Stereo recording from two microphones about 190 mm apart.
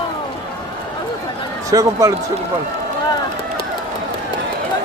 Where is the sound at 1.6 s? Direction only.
15° right (ahead or behind).